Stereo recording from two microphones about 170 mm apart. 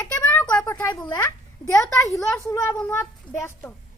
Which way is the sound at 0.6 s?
20° left (ahead or behind).